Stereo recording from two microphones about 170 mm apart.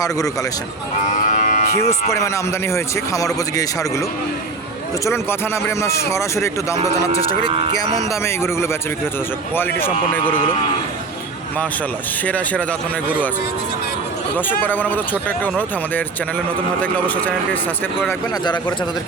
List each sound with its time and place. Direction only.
1.3 s cattle: 50° left (ahead or behind)
2.0 s a man's voice: 20° left (ahead or behind)
5.0 s speech: 15° left (ahead or behind)
7.9 s speech: 15° left (ahead or behind)
12.2 s speech: 10° left (ahead or behind)
14.6 s speech: 10° left (ahead or behind)